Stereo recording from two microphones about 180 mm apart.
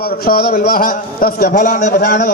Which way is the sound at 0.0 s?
55° left (ahead or behind).